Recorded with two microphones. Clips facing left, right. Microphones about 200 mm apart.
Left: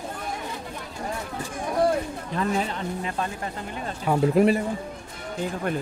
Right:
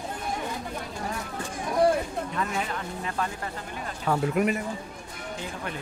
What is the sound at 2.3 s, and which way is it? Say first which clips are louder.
A man's voice: left 7 dB; 30° left (ahead or behind).